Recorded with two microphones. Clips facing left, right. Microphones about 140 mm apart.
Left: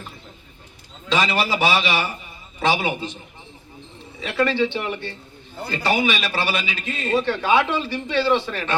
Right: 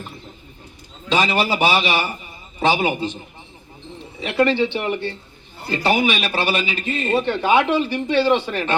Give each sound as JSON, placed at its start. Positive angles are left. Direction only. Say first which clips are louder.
{"t": 1.2, "sound": "a man's voice", "louder": "right 2 dB", "side_deg": -10}
{"t": 4.2, "sound": "a man's voice", "louder": "right 3 dB", "side_deg": -20}